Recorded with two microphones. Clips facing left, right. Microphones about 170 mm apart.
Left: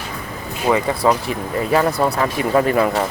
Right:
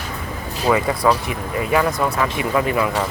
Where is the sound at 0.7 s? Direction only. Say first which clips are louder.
Left 1 dB; 30° left (ahead or behind).